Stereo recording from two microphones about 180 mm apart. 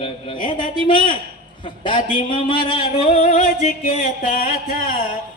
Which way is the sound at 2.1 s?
30° left (ahead or behind).